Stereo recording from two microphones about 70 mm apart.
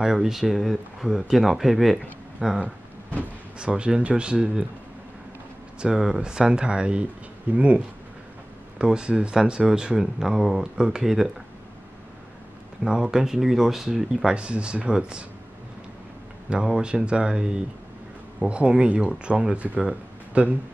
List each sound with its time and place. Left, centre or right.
0.0 s speech: centre
5.8 s speech: centre
12.8 s speech: centre
16.4 s speech: centre
19.8 s a sound: centre